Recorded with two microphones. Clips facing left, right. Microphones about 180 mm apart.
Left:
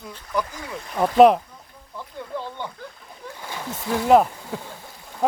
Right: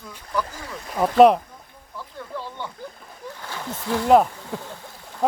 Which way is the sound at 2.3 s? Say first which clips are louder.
Left 2 dB; 15° left (ahead or behind).